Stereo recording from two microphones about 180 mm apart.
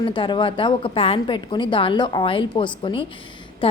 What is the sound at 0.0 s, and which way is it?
A woman's voice, 25° left (ahead or behind).